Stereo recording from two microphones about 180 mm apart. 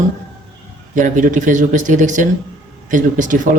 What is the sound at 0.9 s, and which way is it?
Speech, 45° right (ahead or behind).